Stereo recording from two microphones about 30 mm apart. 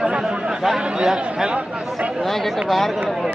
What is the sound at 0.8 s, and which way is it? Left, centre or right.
Speech, right.